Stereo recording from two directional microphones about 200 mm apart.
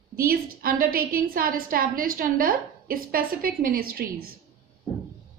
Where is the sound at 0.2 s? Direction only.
45° right (ahead or behind).